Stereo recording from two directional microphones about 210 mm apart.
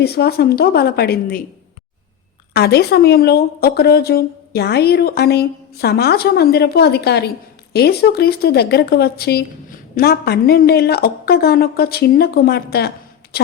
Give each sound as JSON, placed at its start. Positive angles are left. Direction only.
{"t": 0.0, "sound": "a woman's voice", "side_deg": 50}
{"t": 2.5, "sound": "a woman's voice", "side_deg": 50}